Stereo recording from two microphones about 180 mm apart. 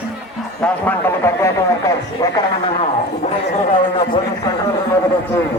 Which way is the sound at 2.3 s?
35° left (ahead or behind).